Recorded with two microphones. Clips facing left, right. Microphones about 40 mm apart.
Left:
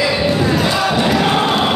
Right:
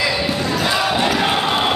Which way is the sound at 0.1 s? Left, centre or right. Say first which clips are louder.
Left 5 dB; centre.